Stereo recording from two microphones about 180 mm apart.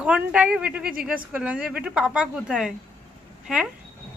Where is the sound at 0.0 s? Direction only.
5° right (ahead or behind).